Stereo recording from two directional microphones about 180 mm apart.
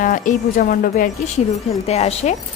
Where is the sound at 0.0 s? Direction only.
50° left (ahead or behind).